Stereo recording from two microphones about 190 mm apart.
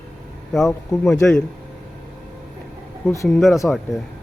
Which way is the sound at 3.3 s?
Centre (ahead or behind).